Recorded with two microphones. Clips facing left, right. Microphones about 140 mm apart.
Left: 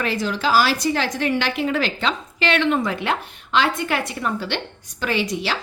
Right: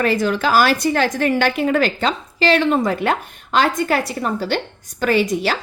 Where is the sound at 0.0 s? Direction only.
50° right (ahead or behind).